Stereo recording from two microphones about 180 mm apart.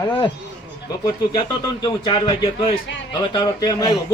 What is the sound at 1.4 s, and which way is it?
A man's voice, 25° left (ahead or behind).